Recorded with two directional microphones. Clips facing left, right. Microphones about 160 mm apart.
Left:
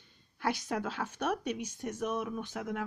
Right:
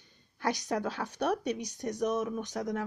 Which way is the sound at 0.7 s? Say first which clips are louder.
Right 2 dB; 35° right (ahead or behind).